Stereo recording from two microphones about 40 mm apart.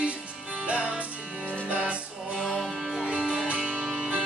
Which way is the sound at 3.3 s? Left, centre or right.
Right.